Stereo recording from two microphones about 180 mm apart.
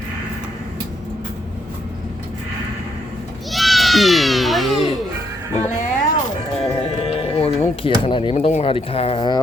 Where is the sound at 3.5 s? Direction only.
Centre (ahead or behind).